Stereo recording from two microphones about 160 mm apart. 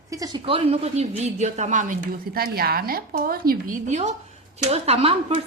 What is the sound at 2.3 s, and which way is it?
A woman's voice, 70° right (ahead or behind).